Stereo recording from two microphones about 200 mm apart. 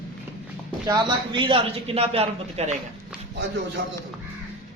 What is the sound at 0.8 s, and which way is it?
A woman's voice, 20° right (ahead or behind).